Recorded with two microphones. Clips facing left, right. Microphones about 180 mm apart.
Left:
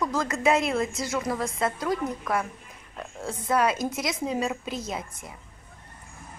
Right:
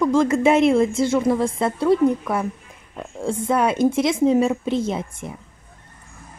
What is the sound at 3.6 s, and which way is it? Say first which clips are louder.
A woman's voice: right 8 dB; 25° right (ahead or behind).